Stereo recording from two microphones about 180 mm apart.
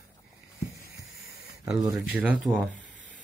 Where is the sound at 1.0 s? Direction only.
Centre (ahead or behind).